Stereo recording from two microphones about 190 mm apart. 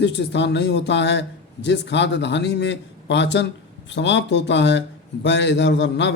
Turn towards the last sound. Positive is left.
turn(degrees=65)  # may be behind; listen again after turning